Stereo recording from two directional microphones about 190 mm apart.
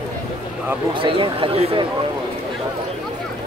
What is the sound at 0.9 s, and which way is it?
Speech, 25° right (ahead or behind).